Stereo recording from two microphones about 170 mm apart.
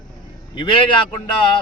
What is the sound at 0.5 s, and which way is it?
Speech, 30° left (ahead or behind).